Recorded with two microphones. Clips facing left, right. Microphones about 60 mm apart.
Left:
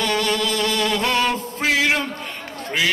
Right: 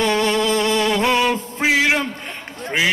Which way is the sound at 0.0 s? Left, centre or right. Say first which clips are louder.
Right 3 dB; right.